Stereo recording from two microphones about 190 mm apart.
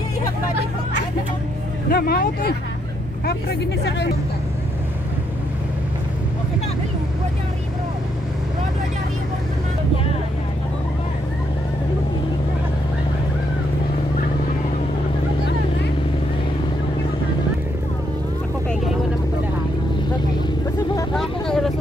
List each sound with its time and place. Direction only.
1.9 s speech: 50° left (ahead or behind)
21.1 s vehicle: centre (ahead or behind)